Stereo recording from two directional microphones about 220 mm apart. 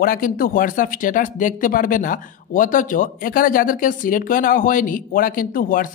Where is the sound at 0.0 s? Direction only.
40° left (ahead or behind).